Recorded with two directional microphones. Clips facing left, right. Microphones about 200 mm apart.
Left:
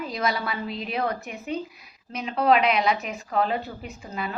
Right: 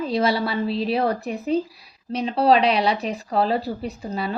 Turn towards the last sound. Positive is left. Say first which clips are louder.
# right 6 dB
turn(degrees=-35)  # may be behind; listen again after turning